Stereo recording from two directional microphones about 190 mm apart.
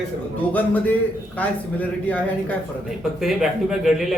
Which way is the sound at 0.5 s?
10° left (ahead or behind).